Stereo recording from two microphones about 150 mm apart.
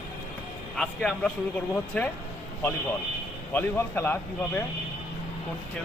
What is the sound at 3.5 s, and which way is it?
Speech, 15° left (ahead or behind).